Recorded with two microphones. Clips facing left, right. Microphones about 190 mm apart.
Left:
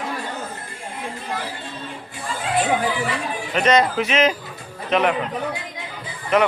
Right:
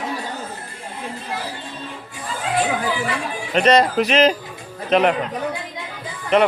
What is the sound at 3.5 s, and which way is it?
Speech, 35° right (ahead or behind).